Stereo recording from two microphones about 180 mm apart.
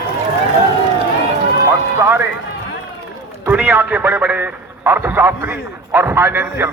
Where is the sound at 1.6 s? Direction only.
15° right (ahead or behind).